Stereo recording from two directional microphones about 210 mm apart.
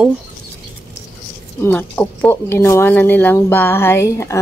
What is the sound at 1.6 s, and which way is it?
Speech, 10° left (ahead or behind).